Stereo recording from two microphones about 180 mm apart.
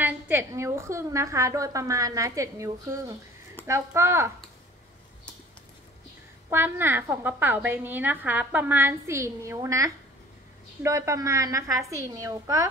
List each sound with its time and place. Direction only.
0.0 s a woman's voice: 10° right (ahead or behind)
6.5 s a woman's voice: 10° right (ahead or behind)